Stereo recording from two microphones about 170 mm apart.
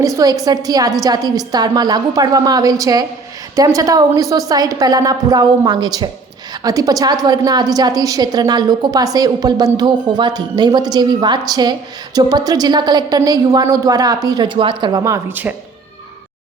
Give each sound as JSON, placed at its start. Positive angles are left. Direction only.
{"t": 0.0, "sound": "a woman's voice", "side_deg": -20}